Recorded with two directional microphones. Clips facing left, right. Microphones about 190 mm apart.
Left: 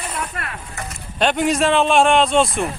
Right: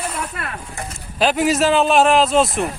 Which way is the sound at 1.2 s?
Centre (ahead or behind).